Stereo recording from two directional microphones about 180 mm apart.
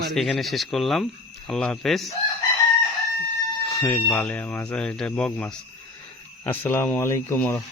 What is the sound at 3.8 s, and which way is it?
Speech, 10° left (ahead or behind).